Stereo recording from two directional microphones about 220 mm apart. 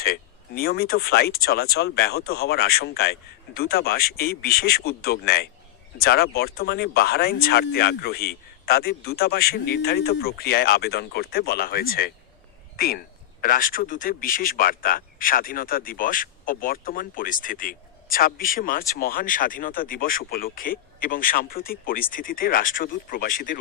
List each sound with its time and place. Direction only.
0.0 s a man's voice: 45° left (ahead or behind)